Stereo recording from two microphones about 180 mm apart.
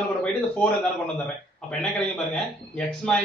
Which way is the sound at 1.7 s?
5° left (ahead or behind).